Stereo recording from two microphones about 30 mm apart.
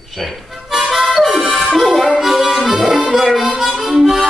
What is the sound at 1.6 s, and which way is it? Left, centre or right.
Music, centre.